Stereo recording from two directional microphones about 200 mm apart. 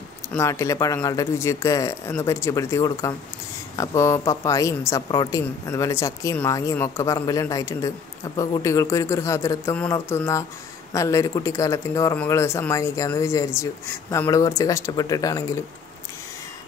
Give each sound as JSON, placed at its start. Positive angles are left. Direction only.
{"t": 0.3, "sound": "a woman's voice", "side_deg": 15}